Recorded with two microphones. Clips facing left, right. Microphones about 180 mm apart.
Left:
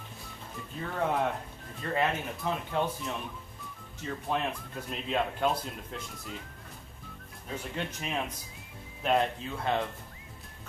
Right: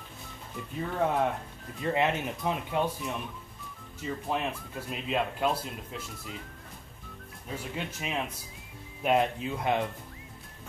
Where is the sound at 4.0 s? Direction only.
5° right (ahead or behind).